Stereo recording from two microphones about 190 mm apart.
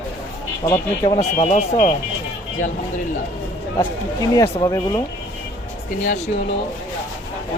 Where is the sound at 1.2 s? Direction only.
35° left (ahead or behind).